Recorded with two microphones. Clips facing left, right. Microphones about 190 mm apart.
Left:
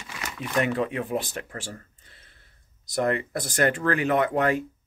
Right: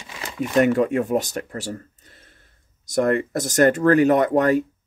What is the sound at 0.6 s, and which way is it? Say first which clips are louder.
Speech: right 8 dB; 45° right (ahead or behind).